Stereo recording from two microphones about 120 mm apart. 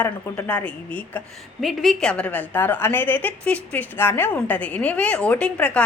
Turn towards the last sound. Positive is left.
turn(degrees=10)  # may be behind; listen again after turning